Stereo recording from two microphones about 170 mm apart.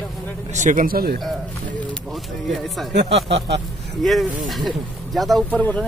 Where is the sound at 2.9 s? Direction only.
80° right.